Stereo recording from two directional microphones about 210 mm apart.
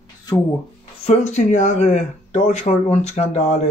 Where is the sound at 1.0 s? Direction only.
30° left (ahead or behind).